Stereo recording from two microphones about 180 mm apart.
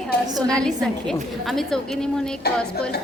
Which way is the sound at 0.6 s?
5° left (ahead or behind).